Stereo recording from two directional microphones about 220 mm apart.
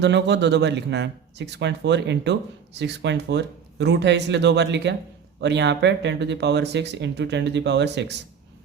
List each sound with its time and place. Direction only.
0.0 s speech: 50° right (ahead or behind)